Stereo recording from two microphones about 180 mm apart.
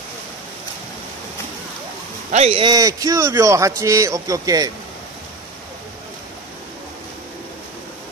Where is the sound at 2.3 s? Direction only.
35° right (ahead or behind).